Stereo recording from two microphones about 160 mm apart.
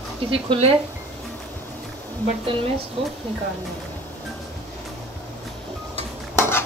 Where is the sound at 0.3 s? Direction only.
35° right (ahead or behind).